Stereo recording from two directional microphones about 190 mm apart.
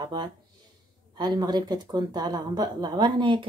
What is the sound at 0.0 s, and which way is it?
Speech, 25° right (ahead or behind).